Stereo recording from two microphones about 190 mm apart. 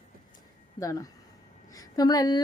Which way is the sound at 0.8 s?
20° left (ahead or behind).